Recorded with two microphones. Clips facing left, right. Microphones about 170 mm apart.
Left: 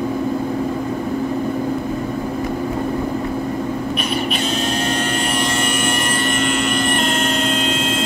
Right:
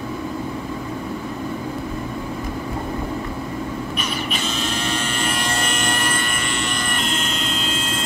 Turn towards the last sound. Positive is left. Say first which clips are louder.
# left 6 dB
turn(degrees=50)  # may be behind; listen again after turning